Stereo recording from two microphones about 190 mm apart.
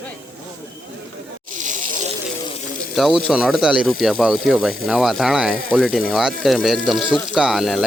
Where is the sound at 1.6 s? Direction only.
40° right (ahead or behind).